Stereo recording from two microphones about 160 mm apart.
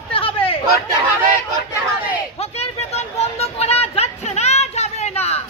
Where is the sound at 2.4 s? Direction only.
40° left (ahead or behind).